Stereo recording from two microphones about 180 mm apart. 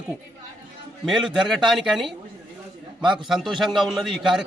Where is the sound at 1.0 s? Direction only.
Centre (ahead or behind).